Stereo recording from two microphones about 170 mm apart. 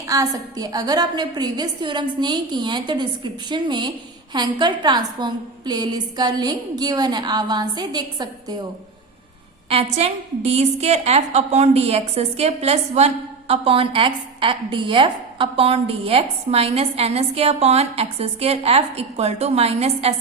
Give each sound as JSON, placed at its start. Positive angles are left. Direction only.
{"t": 0.1, "sound": "a woman's voice", "side_deg": -20}
{"t": 9.6, "sound": "a woman's voice", "side_deg": -35}